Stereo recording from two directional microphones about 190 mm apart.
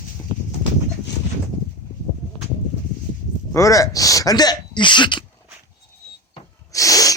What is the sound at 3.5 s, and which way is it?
Speech, 15° left (ahead or behind).